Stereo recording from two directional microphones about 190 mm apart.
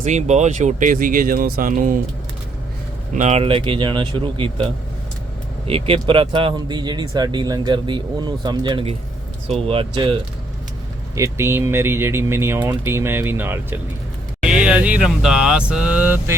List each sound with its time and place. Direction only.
0.0 s speech: 35° right (ahead or behind)
3.2 s speech: 35° right (ahead or behind)
11.1 s speech: 15° right (ahead or behind)